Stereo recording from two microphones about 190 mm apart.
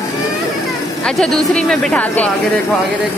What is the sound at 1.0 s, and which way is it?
Speech, 5° left (ahead or behind).